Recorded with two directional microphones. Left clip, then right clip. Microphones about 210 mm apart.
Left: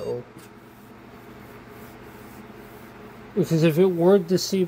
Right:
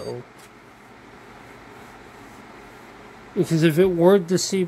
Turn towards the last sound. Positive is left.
turn(degrees=-15)  # may be behind; listen again after turning